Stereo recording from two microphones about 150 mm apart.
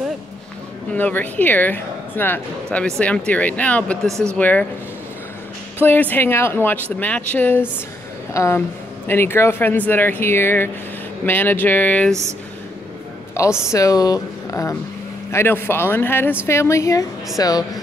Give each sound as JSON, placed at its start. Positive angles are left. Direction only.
{"t": 0.9, "sound": "speech", "side_deg": 10}
{"t": 5.8, "sound": "speech", "side_deg": 10}
{"t": 13.7, "sound": "speech", "side_deg": 20}